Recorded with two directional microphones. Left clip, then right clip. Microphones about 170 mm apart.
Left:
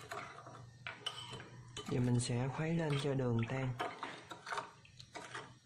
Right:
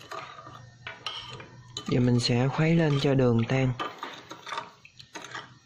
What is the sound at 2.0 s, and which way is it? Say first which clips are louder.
Speech: right 13 dB; 30° right (ahead or behind).